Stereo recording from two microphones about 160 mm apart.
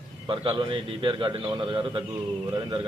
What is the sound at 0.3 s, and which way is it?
A man's voice, 35° right (ahead or behind).